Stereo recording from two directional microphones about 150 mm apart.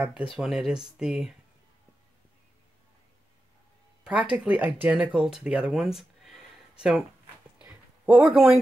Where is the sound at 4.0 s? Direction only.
10° right (ahead or behind).